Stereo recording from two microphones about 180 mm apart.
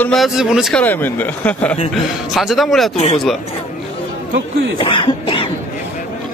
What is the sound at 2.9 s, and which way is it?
Speech, 35° left (ahead or behind).